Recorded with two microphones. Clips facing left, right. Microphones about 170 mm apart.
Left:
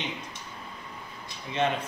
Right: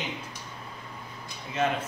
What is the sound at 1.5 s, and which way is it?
Speech, 5° right (ahead or behind).